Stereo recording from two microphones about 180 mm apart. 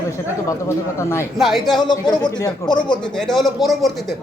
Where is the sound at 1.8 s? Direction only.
25° left (ahead or behind).